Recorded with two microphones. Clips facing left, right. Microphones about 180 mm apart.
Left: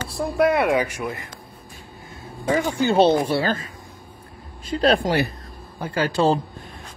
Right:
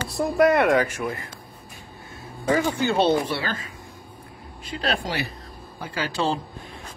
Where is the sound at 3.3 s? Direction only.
40° left (ahead or behind).